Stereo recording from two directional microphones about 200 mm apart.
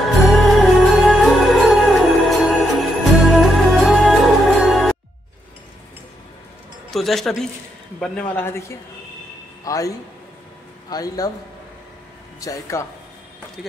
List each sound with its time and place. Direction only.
0.3 s music: centre (ahead or behind)
6.9 s a man's voice: centre (ahead or behind); by 11.3 s 20° left (ahead or behind)
12.4 s a man's voice: 15° left (ahead or behind)